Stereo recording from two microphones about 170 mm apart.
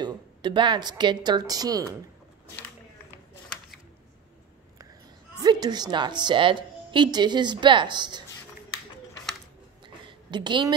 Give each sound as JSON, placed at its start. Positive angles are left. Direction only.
{"t": 0.0, "sound": "speech", "side_deg": -25}
{"t": 5.4, "sound": "a woman's voice", "side_deg": -25}
{"t": 9.8, "sound": "a sound", "side_deg": -30}